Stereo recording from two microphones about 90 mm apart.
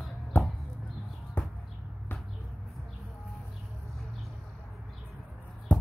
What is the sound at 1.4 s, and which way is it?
Basketball bounce, 20° left (ahead or behind).